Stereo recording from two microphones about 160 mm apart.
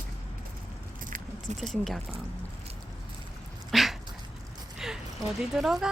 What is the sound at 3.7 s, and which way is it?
Dog, centre (ahead or behind).